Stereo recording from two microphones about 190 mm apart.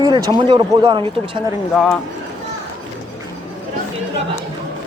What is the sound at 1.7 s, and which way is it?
Speech, 5° left (ahead or behind).